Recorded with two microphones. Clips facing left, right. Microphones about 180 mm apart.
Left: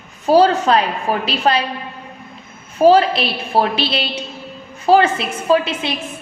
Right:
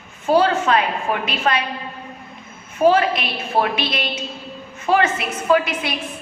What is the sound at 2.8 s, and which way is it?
A woman's voice, 30° left (ahead or behind).